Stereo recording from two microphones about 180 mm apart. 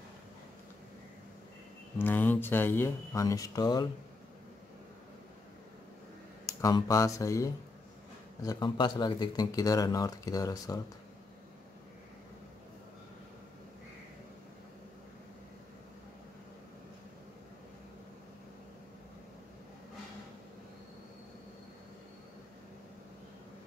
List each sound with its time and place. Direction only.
2.0 s speech: 10° left (ahead or behind)
6.6 s speech: 20° left (ahead or behind)